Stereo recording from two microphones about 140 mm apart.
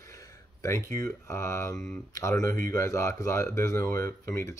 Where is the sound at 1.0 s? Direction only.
20° left (ahead or behind).